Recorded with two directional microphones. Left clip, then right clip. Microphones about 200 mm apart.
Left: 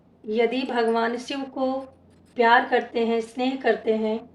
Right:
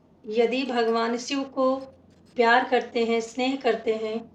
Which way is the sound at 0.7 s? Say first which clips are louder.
Left 2 dB; 35° left (ahead or behind).